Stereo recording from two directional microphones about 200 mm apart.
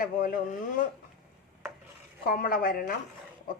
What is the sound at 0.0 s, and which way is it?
Speech, 45° left (ahead or behind).